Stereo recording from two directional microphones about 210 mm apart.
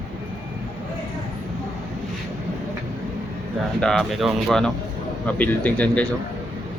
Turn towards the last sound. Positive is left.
turn(degrees=5)  # may be behind; listen again after turning